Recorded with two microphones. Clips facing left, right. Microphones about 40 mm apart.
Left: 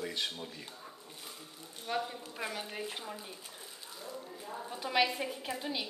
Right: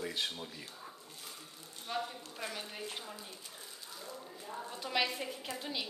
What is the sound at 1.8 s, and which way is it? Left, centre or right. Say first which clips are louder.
A woman's voice: left 3 dB; centre.